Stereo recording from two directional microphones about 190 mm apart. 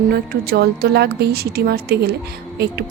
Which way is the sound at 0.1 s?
55° right (ahead or behind).